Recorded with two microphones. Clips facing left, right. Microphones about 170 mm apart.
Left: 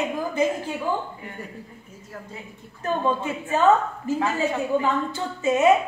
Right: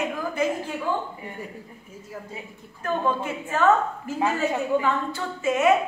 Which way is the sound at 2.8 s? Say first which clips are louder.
Left 1 dB; 20° left (ahead or behind).